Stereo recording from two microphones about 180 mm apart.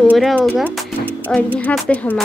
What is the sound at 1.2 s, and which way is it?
Speech, 10° left (ahead or behind).